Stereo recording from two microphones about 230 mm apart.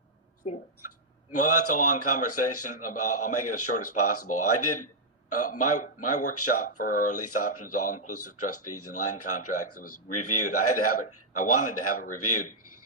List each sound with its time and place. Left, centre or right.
0.8 s a man's voice: left
7.8 s a man's voice: left
8.0 s speech: left